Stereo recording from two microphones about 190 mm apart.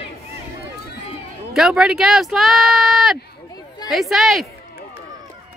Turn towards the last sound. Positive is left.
turn(degrees=0)  # may be behind; listen again after turning